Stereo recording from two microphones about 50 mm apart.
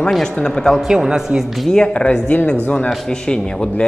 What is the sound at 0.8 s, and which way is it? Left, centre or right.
Speech, centre.